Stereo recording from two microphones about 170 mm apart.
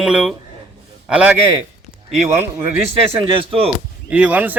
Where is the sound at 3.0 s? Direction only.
35° right (ahead or behind).